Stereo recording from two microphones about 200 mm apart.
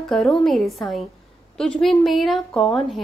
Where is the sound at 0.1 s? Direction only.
Centre (ahead or behind).